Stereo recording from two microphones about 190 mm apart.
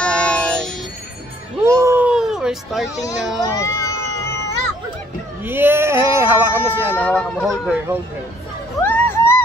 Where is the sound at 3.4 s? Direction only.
15° left (ahead or behind).